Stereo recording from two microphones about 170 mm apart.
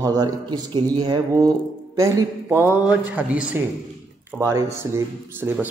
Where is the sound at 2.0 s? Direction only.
15° right (ahead or behind).